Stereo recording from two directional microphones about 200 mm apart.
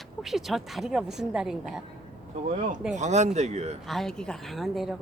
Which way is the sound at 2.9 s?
35° right (ahead or behind).